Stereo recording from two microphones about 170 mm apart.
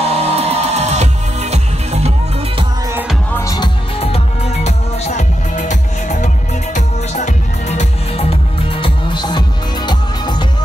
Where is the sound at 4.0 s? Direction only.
35° left (ahead or behind).